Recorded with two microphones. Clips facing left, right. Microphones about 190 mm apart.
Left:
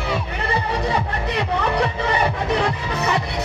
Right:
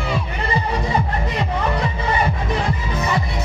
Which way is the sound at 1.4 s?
70° left (ahead or behind).